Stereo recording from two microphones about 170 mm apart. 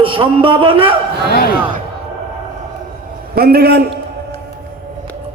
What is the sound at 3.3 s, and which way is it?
Speech, 65° right (ahead or behind).